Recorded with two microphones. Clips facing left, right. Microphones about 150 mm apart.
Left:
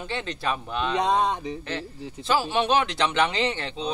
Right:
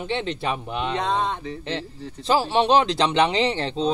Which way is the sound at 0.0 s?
25° right (ahead or behind).